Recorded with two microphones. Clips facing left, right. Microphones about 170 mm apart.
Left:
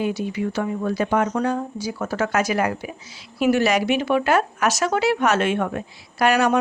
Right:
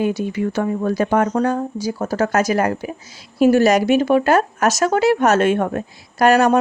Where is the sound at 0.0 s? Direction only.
45° right (ahead or behind).